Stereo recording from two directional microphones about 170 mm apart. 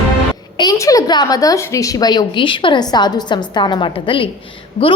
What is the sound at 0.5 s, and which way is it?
A woman's voice, 20° left (ahead or behind).